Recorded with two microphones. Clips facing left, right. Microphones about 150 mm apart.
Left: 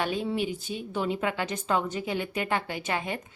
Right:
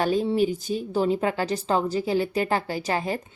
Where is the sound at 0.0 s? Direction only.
40° right (ahead or behind).